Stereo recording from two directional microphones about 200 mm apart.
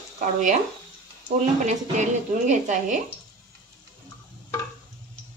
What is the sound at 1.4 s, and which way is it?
Speech, 35° right (ahead or behind).